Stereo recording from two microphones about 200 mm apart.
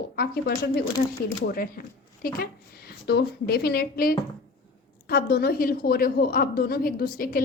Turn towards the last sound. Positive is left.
turn(degrees=45)  # may be behind; listen again after turning